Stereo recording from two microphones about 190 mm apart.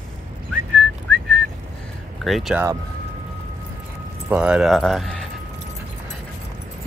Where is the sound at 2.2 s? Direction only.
Centre (ahead or behind).